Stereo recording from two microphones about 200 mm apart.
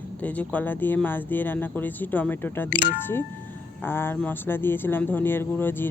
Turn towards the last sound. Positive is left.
turn(degrees=10)  # may be behind; listen again after turning